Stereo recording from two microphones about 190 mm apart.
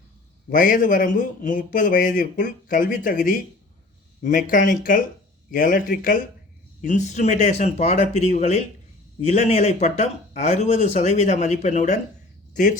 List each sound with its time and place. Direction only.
0.5 s speech: 45° left (ahead or behind)